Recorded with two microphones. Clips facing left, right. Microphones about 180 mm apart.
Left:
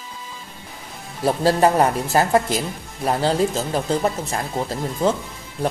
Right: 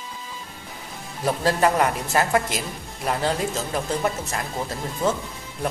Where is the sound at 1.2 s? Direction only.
30° left (ahead or behind).